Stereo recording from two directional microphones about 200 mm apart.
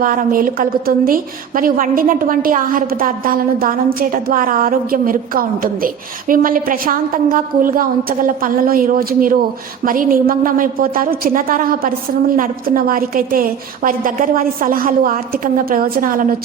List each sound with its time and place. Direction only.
0.0 s a woman's voice: 45° right (ahead or behind)